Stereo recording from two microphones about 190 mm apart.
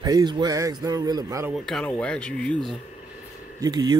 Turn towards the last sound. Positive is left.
turn(degrees=-20)  # may be behind; listen again after turning